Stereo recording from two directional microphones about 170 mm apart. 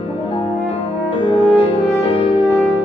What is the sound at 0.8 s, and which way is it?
French horn, 30° left (ahead or behind).